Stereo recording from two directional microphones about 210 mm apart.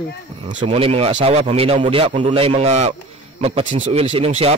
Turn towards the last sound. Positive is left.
turn(degrees=-30)  # may be behind; listen again after turning